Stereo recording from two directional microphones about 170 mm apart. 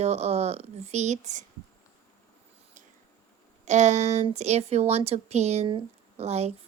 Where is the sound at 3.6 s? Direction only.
45° right (ahead or behind).